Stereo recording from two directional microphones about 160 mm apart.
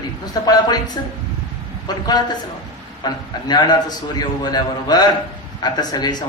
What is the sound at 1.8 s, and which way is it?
A man's voice, 25° left (ahead or behind).